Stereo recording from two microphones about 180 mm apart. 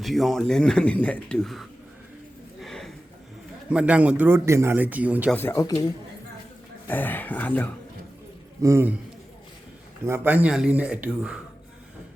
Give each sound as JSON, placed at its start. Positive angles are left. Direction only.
{"t": 0.0, "sound": "speech", "side_deg": 0}
{"t": 2.6, "sound": "a sound", "side_deg": 0}
{"t": 3.7, "sound": "speech", "side_deg": -5}
{"t": 5.3, "sound": "speech", "side_deg": 10}
{"t": 8.6, "sound": "speech", "side_deg": -15}
{"t": 10.0, "sound": "speech", "side_deg": -10}